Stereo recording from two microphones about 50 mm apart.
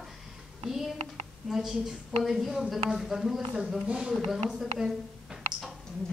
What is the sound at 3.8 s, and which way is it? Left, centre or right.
A woman's voice, centre.